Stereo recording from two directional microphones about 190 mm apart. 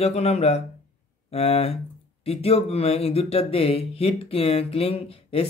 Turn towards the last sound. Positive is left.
turn(degrees=30)  # may be behind; listen again after turning